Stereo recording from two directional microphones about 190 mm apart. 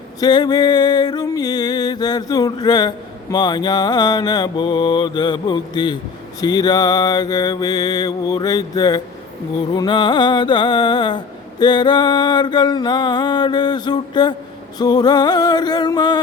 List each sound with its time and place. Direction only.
0.2 s music: 20° left (ahead or behind)